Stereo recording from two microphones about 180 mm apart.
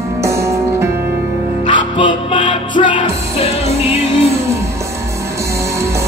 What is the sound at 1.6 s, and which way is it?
Music, 25° left (ahead or behind).